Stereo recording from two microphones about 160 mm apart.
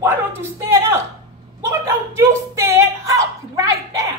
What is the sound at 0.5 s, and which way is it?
A woman's voice, 15° right (ahead or behind).